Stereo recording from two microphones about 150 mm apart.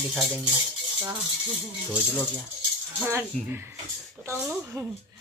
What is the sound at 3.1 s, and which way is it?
A woman's voice, 15° right (ahead or behind).